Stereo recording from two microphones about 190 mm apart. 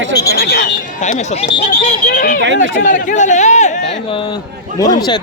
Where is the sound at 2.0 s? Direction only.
50° left (ahead or behind).